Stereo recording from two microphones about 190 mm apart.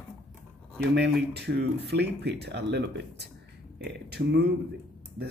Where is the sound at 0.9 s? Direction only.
60° right (ahead or behind).